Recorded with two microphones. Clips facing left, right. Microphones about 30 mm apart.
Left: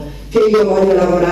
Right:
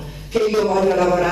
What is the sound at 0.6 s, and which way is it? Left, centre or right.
Speech, centre.